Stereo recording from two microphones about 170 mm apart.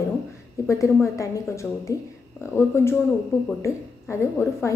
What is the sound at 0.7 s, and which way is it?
A woman's voice, 15° left (ahead or behind).